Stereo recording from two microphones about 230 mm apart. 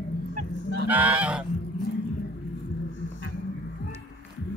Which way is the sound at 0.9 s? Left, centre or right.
Centre.